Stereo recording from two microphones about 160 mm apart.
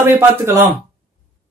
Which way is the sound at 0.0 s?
15° right (ahead or behind).